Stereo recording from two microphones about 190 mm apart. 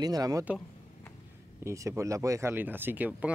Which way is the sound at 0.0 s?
20° right (ahead or behind).